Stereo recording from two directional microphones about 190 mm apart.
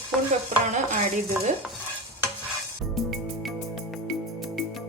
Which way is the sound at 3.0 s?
Centre (ahead or behind).